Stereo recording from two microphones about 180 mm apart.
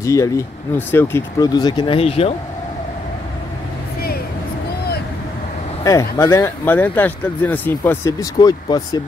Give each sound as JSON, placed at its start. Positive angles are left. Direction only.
{"t": 0.0, "sound": "speech", "side_deg": 15}
{"t": 5.9, "sound": "speech", "side_deg": 15}